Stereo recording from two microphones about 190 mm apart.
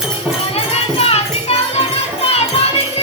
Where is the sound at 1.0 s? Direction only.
30° left (ahead or behind).